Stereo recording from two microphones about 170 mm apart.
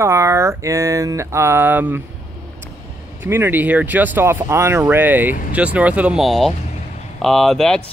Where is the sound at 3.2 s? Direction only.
15° right (ahead or behind).